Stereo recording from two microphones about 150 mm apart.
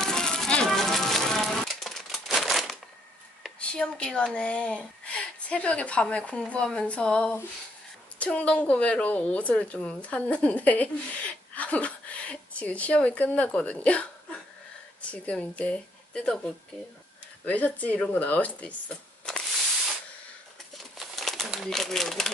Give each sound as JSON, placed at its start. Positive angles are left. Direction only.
{"t": 0.0, "sound": "music", "side_deg": 5}
{"t": 3.4, "sound": "a woman's voice", "side_deg": 5}
{"t": 20.7, "sound": "crumpling", "side_deg": 0}